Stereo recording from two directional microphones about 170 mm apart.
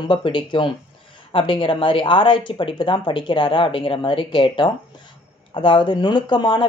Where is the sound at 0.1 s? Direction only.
30° left (ahead or behind).